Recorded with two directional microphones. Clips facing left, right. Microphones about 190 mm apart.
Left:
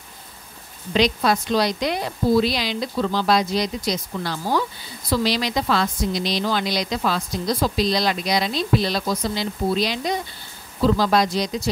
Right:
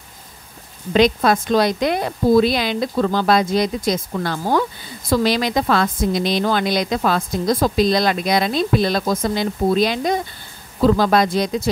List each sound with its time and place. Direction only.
0.9 s a woman's voice: 50° right (ahead or behind)